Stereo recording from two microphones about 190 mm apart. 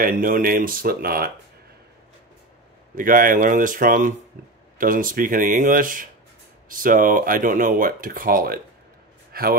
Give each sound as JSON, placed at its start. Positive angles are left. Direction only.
{"t": 0.0, "sound": "speech", "side_deg": -50}
{"t": 3.0, "sound": "a man's voice", "side_deg": -45}